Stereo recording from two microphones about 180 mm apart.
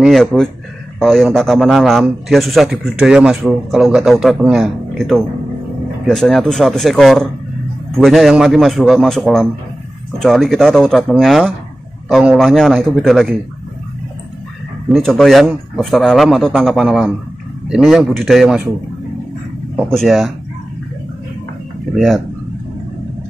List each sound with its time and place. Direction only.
0.0 s a man's voice: centre (ahead or behind)
14.9 s speech: centre (ahead or behind)
19.7 s speech: centre (ahead or behind)
21.9 s speech: centre (ahead or behind)